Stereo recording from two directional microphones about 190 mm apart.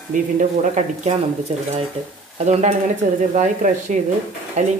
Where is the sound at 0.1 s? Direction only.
40° right (ahead or behind).